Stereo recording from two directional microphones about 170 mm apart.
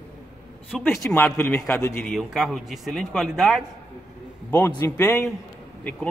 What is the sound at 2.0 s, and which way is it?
Speech, centre (ahead or behind).